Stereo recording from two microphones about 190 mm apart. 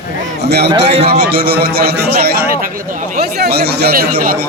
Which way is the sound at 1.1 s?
50° right (ahead or behind).